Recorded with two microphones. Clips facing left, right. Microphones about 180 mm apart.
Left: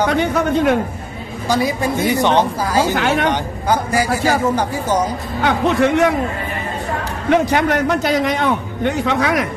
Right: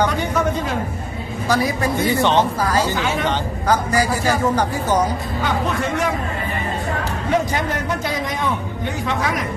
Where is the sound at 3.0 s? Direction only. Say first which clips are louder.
Left 4 dB; 75° left (ahead or behind).